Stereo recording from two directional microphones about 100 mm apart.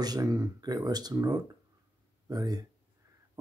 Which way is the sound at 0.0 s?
40° right (ahead or behind).